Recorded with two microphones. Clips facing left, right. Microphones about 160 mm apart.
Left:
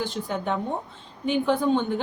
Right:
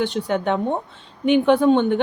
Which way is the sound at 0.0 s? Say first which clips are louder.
Right 7 dB; 70° right (ahead or behind).